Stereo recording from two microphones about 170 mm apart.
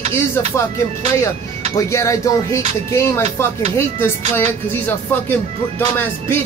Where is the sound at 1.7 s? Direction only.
20° left (ahead or behind).